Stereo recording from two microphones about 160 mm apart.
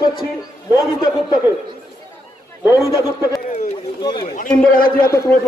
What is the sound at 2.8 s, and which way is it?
A man's voice, 20° left (ahead or behind).